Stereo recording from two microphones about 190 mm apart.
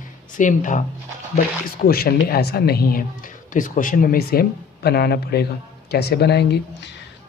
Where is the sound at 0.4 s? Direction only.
40° left (ahead or behind).